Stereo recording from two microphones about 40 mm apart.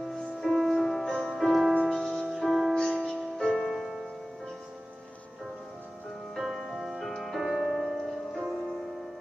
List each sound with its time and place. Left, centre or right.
0.1 s music: centre
1.0 s music: left
1.3 s music: centre
1.7 s music: left
2.3 s music: centre
2.7 s music: left
3.5 s music: centre
6.3 s music: centre